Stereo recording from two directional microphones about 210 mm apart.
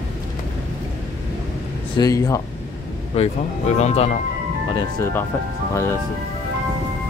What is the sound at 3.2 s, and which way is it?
Speech, 30° left (ahead or behind).